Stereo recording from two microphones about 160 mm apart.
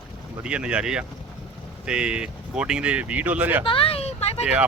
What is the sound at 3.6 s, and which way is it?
Speech, 35° left (ahead or behind).